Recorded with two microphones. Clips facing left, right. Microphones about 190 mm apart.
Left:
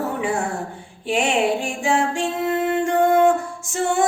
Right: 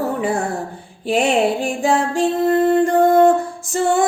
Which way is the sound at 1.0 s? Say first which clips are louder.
Right 3 dB; 35° right (ahead or behind).